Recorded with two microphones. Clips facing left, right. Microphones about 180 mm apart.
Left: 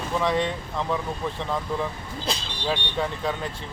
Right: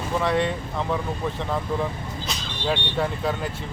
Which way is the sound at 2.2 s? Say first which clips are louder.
Left 6 dB; 30° left (ahead or behind).